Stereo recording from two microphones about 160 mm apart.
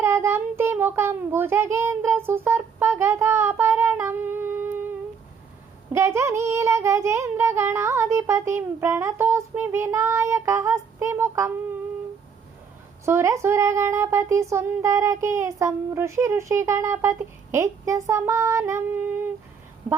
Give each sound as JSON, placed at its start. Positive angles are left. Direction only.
{"t": 0.0, "sound": "a child's voice", "side_deg": -15}
{"t": 13.1, "sound": "speech", "side_deg": -20}